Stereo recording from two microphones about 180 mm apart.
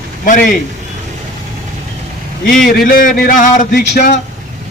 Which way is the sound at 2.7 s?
55° left (ahead or behind).